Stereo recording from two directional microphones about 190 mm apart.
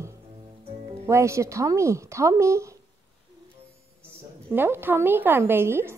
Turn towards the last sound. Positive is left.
turn(degrees=-10)  # may be behind; listen again after turning